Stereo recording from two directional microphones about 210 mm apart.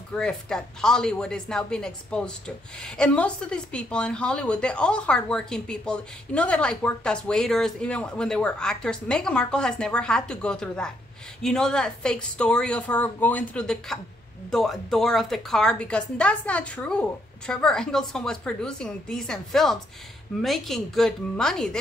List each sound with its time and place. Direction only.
0.1 s a woman's voice: 5° left (ahead or behind)